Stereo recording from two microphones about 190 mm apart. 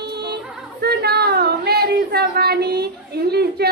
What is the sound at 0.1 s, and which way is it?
Music, 60° right (ahead or behind).